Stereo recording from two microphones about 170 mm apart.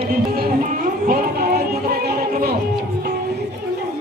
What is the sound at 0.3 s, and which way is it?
Music, 60° right (ahead or behind).